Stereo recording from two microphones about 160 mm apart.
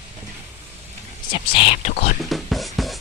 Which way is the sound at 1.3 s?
35° left (ahead or behind).